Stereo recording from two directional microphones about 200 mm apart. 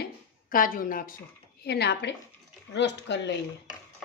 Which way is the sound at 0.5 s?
45° left (ahead or behind).